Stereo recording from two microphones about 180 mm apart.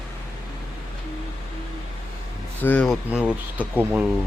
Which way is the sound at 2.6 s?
10° left (ahead or behind).